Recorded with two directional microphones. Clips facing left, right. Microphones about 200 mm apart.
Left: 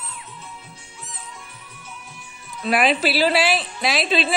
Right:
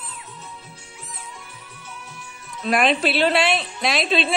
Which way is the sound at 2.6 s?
5° left (ahead or behind).